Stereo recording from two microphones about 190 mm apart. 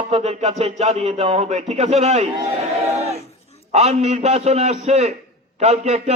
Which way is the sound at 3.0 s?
35° right (ahead or behind).